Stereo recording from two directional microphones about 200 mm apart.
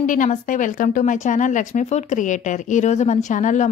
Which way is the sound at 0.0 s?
40° left (ahead or behind).